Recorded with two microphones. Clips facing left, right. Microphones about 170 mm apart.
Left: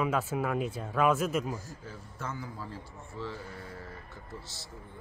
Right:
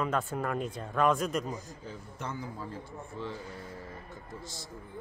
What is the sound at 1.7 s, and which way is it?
A man's voice, 15° right (ahead or behind).